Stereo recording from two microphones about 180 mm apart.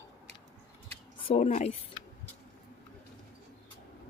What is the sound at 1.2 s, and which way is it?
Speech, 40° left (ahead or behind).